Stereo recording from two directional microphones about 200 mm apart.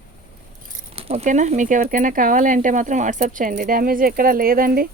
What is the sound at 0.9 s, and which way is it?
Speech, 30° right (ahead or behind).